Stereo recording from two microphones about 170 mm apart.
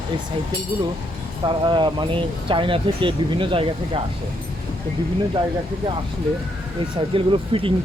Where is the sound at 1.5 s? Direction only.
30° right (ahead or behind).